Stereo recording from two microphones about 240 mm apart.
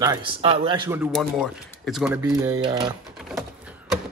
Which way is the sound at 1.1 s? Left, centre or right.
Centre.